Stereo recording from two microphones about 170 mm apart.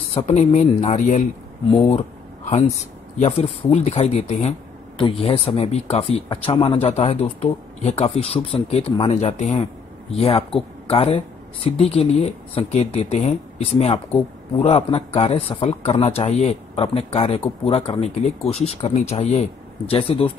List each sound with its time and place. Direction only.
0.1 s speech: 40° left (ahead or behind)
3.2 s speech: 35° left (ahead or behind)